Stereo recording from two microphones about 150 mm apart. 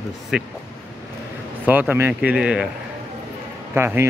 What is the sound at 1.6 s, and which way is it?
Speech, 10° right (ahead or behind).